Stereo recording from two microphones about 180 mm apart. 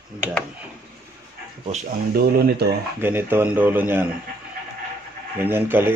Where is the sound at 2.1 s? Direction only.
60° right (ahead or behind).